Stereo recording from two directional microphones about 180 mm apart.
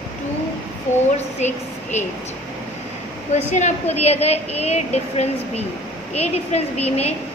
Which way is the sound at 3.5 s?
40° left (ahead or behind).